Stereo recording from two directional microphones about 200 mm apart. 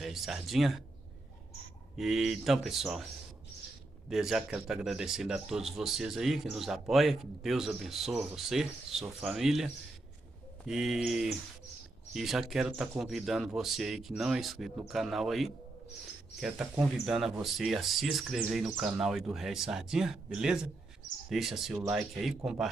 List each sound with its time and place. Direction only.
0.0 s speech: centre (ahead or behind)
2.0 s speech: centre (ahead or behind)
4.1 s speech: centre (ahead or behind)
10.7 s speech: centre (ahead or behind)